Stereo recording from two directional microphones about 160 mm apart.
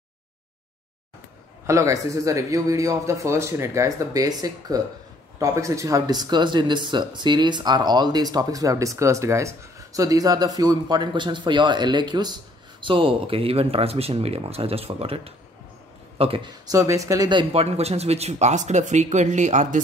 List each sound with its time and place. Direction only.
1.7 s speech: 20° right (ahead or behind); by 19.8 s 50° right (ahead or behind)